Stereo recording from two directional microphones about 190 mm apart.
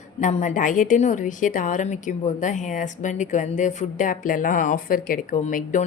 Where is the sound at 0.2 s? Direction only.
40° left (ahead or behind).